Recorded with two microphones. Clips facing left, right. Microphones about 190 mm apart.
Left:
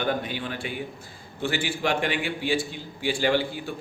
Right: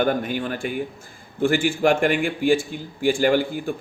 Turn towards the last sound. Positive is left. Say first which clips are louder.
# right 5 dB
turn(degrees=-50)  # may be behind; listen again after turning